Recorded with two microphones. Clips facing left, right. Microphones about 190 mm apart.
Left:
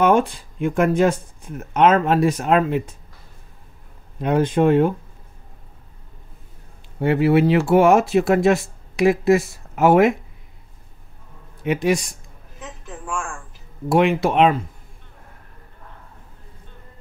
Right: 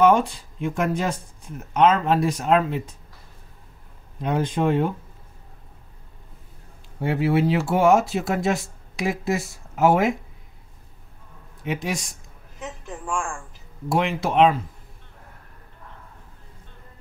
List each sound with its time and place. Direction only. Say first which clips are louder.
0.0 s speech: left 1 dB; 55° left (ahead or behind)
4.2 s speech: left 5 dB; 55° left (ahead or behind)
7.0 s speech: left 5 dB; 65° left (ahead or behind)
11.6 s speech: left 7 dB; 65° left (ahead or behind)
12.8 s a woman's voice: even; 15° right (ahead or behind)
13.8 s speech: left 6 dB; 60° left (ahead or behind)